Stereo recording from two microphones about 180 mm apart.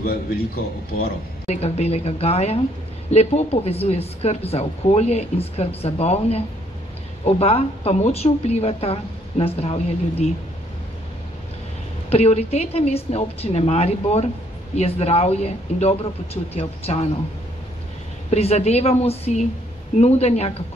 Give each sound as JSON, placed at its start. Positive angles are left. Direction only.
{"t": 1.5, "sound": "a woman's voice", "side_deg": 35}
{"t": 12.1, "sound": "a woman's voice", "side_deg": 35}
{"t": 18.3, "sound": "a woman's voice", "side_deg": 35}